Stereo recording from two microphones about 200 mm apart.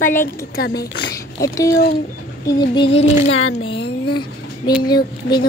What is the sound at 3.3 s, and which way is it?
Speech, 85° left.